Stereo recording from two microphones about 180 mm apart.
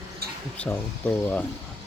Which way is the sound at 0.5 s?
5° left (ahead or behind).